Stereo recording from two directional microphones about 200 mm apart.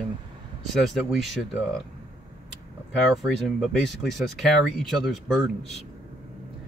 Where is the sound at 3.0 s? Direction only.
Centre (ahead or behind).